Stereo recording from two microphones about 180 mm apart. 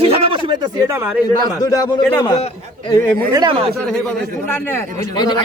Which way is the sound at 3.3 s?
25° right (ahead or behind).